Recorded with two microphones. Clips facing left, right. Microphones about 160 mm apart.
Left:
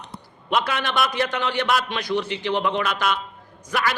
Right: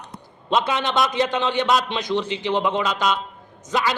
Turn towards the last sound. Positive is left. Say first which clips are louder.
# right 2 dB
turn(degrees=-20)  # may be behind; listen again after turning